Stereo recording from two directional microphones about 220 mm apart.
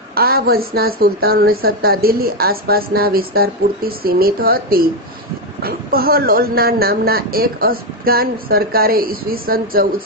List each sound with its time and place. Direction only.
0.1 s a woman's voice: 45° right (ahead or behind)